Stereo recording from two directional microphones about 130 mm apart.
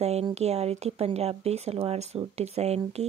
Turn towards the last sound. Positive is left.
turn(degrees=-55)  # may be behind; listen again after turning